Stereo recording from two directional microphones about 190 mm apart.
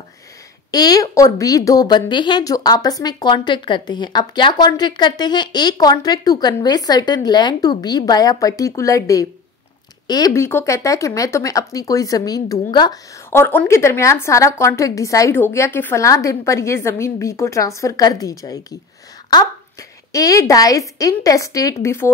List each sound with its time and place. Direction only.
0.7 s speech: 20° left (ahead or behind)